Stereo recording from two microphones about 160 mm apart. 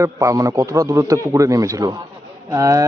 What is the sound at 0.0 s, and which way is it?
A man's voice, 20° right (ahead or behind).